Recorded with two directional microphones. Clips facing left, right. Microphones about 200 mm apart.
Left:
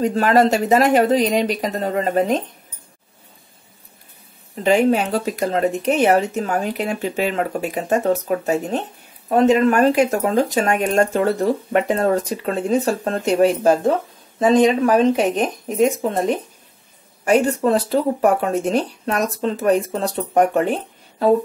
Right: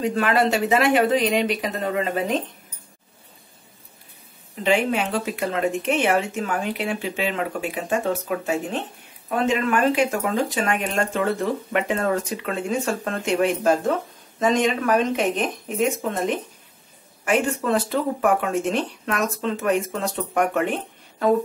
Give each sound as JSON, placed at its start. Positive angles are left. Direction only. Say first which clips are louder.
{"t": 0.0, "sound": "speech", "louder": "left 5 dB", "side_deg": 40}
{"t": 4.6, "sound": "speech", "louder": "left 5 dB", "side_deg": 40}